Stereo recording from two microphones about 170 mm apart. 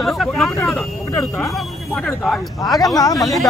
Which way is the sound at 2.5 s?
20° left (ahead or behind).